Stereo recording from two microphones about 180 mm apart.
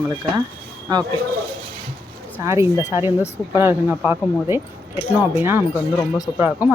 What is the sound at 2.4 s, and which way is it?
Speech, 15° right (ahead or behind).